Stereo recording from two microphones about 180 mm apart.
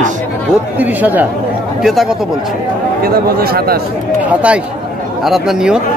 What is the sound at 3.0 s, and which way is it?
Speech, 55° right (ahead or behind).